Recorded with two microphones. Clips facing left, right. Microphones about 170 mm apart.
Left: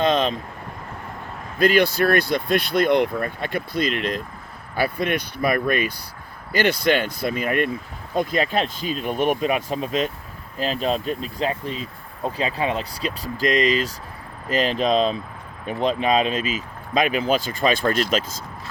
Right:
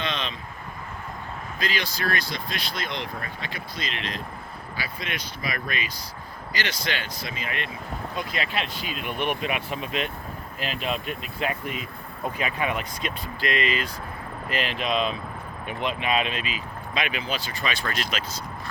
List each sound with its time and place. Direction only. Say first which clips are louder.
0.0 s vehicle: left 11 dB; 45° left (ahead or behind)
1.5 s speech: left 13 dB; 55° left (ahead or behind)